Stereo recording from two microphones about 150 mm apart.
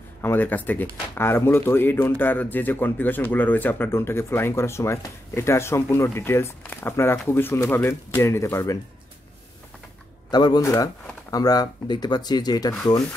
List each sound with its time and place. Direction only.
0.2 s speech: 15° left (ahead or behind)
10.3 s speech: 25° left (ahead or behind)